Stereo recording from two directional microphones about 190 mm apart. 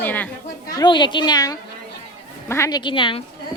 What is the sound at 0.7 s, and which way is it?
A woman's voice, 25° left (ahead or behind).